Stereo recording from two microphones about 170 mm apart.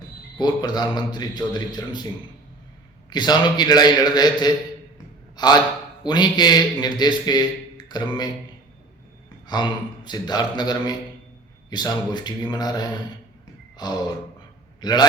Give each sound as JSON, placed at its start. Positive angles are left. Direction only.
{"t": 0.3, "sound": "a man's voice", "side_deg": 25}
{"t": 3.1, "sound": "a man's voice", "side_deg": 25}
{"t": 7.9, "sound": "a sound", "side_deg": 25}
{"t": 9.5, "sound": "a man's voice", "side_deg": 25}
{"t": 13.7, "sound": "a sound", "side_deg": 25}
{"t": 14.8, "sound": "a man's voice", "side_deg": 25}